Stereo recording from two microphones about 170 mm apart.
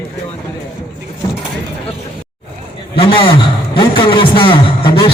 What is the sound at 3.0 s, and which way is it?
A man's voice, 30° left (ahead or behind).